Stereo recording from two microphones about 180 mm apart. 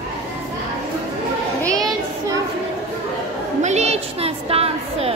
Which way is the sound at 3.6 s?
40° right (ahead or behind).